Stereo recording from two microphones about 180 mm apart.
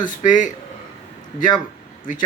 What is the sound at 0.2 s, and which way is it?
Speech, 45° left (ahead or behind).